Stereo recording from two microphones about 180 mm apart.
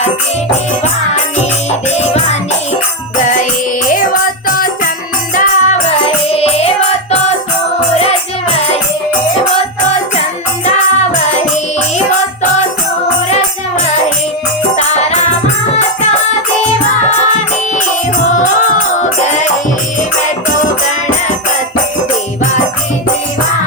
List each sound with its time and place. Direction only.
2.0 s music: 35° left (ahead or behind)
4.4 s music: 50° left (ahead or behind)
6.2 s music: 35° left (ahead or behind)
14.8 s music: 40° left (ahead or behind)
18.9 s music: 40° left (ahead or behind)
20.6 s music: 45° left (ahead or behind)